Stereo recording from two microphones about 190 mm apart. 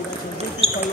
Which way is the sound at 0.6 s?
30° right (ahead or behind).